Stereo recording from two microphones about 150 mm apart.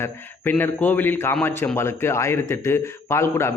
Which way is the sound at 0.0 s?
15° left (ahead or behind).